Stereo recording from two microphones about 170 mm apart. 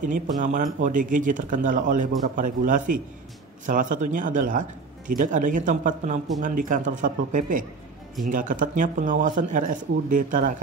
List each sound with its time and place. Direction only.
0.0 s speech: 50° right (ahead or behind)